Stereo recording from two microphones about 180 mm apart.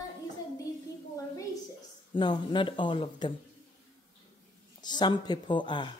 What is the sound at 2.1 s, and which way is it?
Speech, 25° left (ahead or behind).